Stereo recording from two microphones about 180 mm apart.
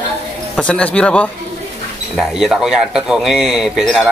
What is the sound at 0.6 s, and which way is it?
Speech, 5° left (ahead or behind).